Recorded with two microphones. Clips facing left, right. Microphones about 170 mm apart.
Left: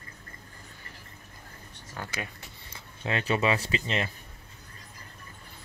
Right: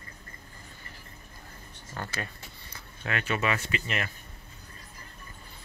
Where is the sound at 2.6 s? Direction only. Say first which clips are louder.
Left 3 dB; 25° left (ahead or behind).